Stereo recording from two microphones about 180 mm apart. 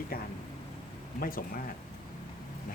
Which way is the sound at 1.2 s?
50° left (ahead or behind).